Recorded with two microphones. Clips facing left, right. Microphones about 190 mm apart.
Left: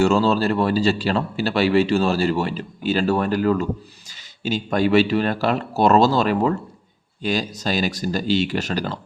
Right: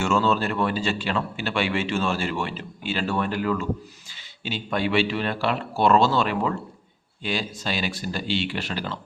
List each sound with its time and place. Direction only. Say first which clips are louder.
0.0 s a man's voice: left 5 dB; 35° left (ahead or behind)